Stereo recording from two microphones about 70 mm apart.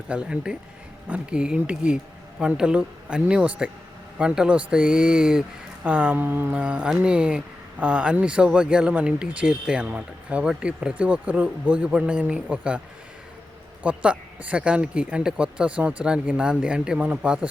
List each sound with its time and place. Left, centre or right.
0.1 s speech: centre; by 6.6 s right
6.6 s speech: centre
13.8 s speech: centre